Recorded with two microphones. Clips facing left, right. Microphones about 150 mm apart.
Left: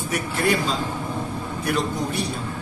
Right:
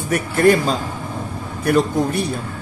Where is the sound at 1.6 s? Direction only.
50° right (ahead or behind).